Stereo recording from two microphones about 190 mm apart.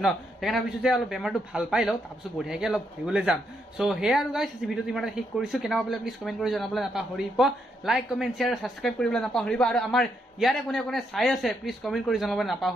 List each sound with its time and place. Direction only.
0.0 s a man's voice: centre (ahead or behind)